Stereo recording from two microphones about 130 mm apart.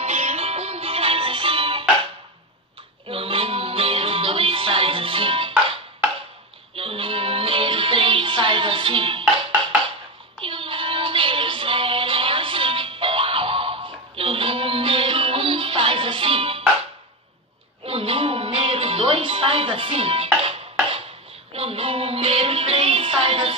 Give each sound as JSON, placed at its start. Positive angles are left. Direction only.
{"t": 0.0, "sound": "music", "side_deg": -55}
{"t": 3.1, "sound": "music", "side_deg": -45}
{"t": 6.7, "sound": "music", "side_deg": -45}
{"t": 10.4, "sound": "music", "side_deg": -45}
{"t": 17.8, "sound": "music", "side_deg": -45}
{"t": 21.5, "sound": "music", "side_deg": -45}